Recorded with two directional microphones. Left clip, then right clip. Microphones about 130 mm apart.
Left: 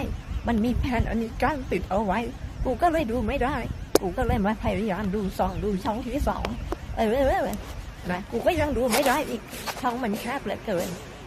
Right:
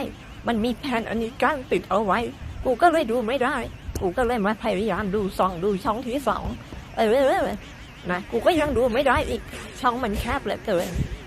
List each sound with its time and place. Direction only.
0.0 s a woman's voice: 20° right (ahead or behind)